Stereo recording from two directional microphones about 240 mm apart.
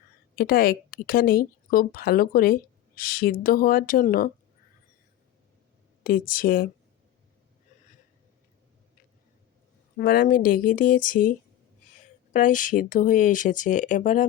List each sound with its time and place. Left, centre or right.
0.3 s speech: left
6.0 s speech: left
10.0 s speech: left